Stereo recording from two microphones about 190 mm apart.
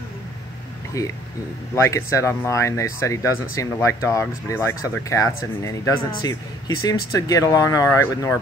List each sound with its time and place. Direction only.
1.0 s speech: 15° left (ahead or behind)